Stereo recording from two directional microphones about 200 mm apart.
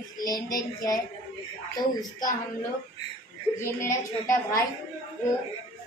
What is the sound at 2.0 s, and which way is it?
Speech, 20° left (ahead or behind).